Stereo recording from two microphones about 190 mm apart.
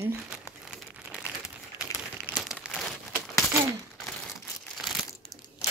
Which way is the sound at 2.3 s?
Centre (ahead or behind).